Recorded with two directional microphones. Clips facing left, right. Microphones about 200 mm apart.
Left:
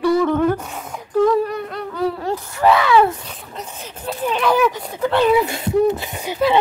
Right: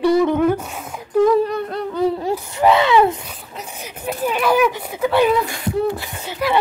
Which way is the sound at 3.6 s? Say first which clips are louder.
Right 1 dB; 10° right (ahead or behind).